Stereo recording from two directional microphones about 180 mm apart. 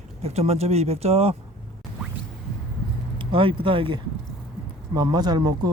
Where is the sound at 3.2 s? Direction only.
30° right (ahead or behind).